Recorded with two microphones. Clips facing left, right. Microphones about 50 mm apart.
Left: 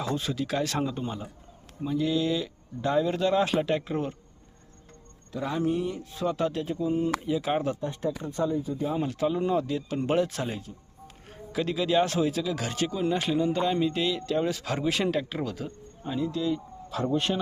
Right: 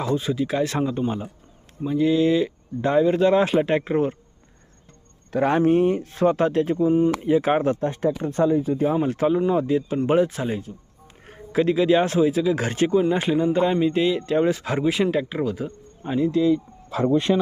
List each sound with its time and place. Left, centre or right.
0.2 s speech: centre
5.3 s speech: right
7.8 s speech: right
9.0 s speech: right
9.6 s speech: right
11.3 s speech: right
12.5 s speech: right
14.8 s speech: centre
16.0 s speech: right